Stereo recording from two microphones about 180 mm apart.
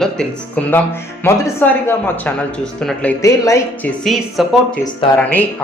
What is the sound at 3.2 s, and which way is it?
Speech, 20° left (ahead or behind).